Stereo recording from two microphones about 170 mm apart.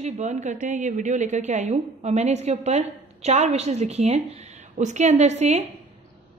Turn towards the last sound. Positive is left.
turn(degrees=-40)  # may be behind; listen again after turning